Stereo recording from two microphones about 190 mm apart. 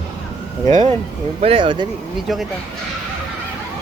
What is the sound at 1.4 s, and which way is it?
Speech, 30° right (ahead or behind).